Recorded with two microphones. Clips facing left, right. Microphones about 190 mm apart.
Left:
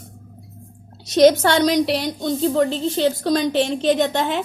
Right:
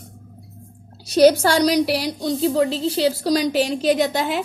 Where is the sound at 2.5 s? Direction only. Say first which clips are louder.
Even; 35° right (ahead or behind).